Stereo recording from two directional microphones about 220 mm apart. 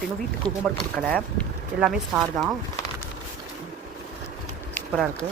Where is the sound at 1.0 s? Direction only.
5° left (ahead or behind).